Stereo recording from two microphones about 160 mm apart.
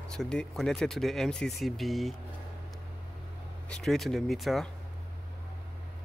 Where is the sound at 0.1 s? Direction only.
5° left (ahead or behind).